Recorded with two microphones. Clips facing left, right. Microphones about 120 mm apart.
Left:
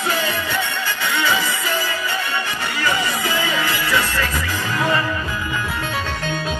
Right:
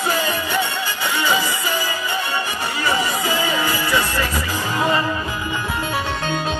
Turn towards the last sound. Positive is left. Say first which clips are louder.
# right 1 dB
turn(degrees=-25)  # may be behind; listen again after turning